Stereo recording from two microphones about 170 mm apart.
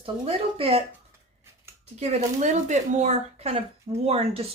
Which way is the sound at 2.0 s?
40° right (ahead or behind).